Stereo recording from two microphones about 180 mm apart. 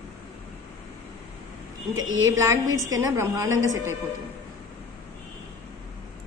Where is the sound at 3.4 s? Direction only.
90° right.